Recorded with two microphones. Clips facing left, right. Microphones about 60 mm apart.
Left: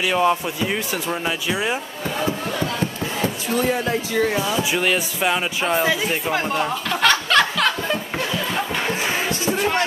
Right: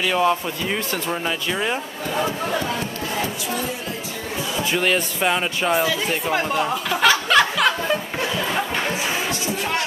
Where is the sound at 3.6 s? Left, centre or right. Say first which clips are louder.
Left 7 dB; left.